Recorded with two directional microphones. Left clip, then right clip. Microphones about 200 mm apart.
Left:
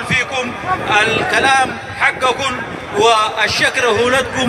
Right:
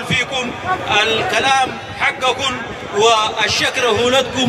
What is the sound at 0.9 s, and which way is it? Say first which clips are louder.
Speech: left 2 dB; 70° right (ahead or behind).